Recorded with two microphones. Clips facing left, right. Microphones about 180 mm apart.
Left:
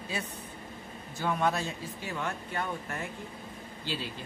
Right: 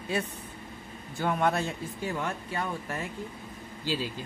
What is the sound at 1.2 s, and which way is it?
Speech, 55° right (ahead or behind).